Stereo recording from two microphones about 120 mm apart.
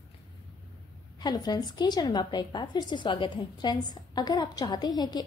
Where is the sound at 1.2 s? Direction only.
35° left (ahead or behind).